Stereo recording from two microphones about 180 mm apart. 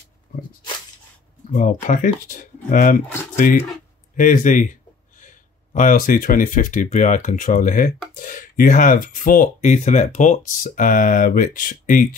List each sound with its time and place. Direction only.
1.5 s speech: 45° left (ahead or behind)